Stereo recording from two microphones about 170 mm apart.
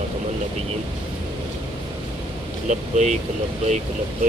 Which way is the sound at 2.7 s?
45° right (ahead or behind).